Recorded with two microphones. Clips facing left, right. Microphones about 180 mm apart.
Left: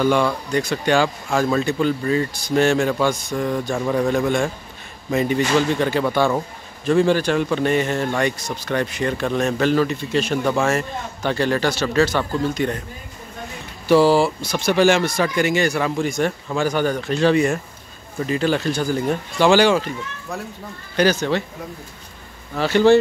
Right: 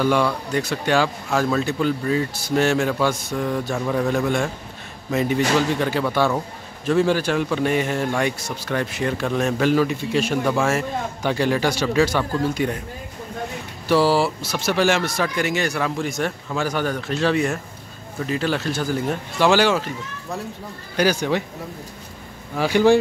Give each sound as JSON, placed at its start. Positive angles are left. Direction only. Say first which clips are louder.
{"t": 0.0, "sound": "a man's voice", "louder": "left 1 dB", "side_deg": -5}
{"t": 13.8, "sound": "a man's voice", "louder": "left 3 dB", "side_deg": 0}
{"t": 22.6, "sound": "a man's voice", "louder": "left 1 dB", "side_deg": -10}